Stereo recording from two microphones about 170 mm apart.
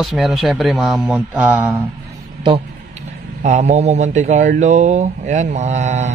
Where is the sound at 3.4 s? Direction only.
40° right (ahead or behind).